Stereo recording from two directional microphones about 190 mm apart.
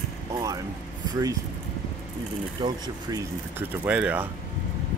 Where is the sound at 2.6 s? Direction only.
25° right (ahead or behind).